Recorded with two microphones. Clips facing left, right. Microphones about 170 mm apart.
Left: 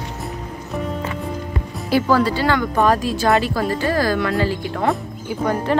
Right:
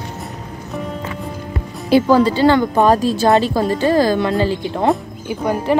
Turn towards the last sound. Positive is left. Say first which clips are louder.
# right 2 dB
turn(degrees=-15)  # may be behind; listen again after turning